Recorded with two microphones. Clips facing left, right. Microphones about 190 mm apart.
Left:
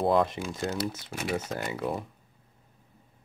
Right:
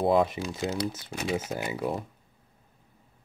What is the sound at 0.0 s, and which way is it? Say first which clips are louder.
Speech: right 1 dB; 5° right (ahead or behind).